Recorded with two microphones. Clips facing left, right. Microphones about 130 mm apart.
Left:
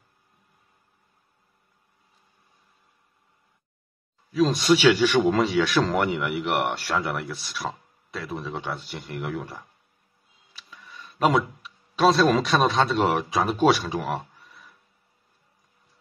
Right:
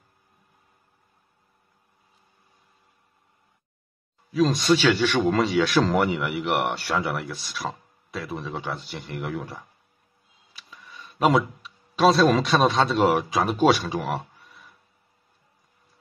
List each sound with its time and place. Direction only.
4.3 s speech: centre (ahead or behind)
10.7 s speech: centre (ahead or behind)